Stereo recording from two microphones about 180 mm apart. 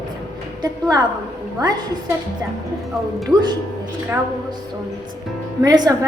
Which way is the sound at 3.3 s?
20° right (ahead or behind).